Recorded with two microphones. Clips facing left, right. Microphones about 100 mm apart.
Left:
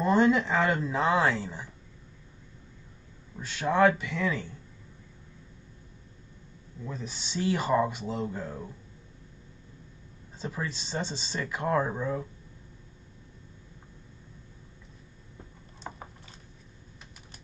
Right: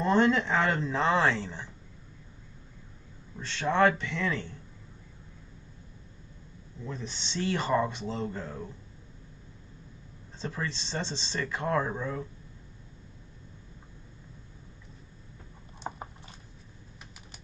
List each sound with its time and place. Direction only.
0.0 s speech: 5° left (ahead or behind)
3.3 s speech: 5° left (ahead or behind)
6.8 s speech: 5° left (ahead or behind)
10.4 s speech: 10° left (ahead or behind)
15.8 s a sound: 25° right (ahead or behind)